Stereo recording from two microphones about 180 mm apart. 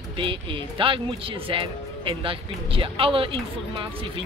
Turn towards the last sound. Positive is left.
turn(degrees=-30)  # may be behind; listen again after turning